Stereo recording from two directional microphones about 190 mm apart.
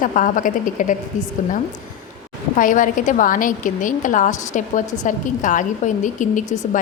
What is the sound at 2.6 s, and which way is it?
A woman's voice, 45° left (ahead or behind).